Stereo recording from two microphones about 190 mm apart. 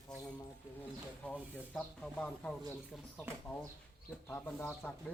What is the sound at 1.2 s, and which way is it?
Speech, 5° left (ahead or behind).